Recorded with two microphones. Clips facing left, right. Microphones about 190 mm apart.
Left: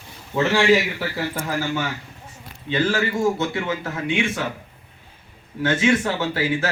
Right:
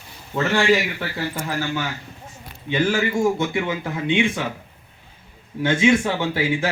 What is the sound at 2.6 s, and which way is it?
A man's voice, 10° right (ahead or behind).